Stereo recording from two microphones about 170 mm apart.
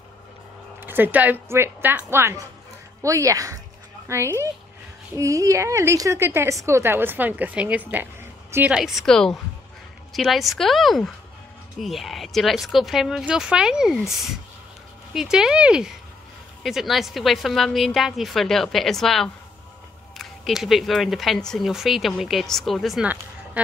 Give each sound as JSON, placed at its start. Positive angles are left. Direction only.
{"t": 0.7, "sound": "a woman's voice", "side_deg": -10}